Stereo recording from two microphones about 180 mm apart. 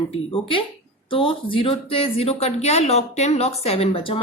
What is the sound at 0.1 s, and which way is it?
Speech, 30° left (ahead or behind).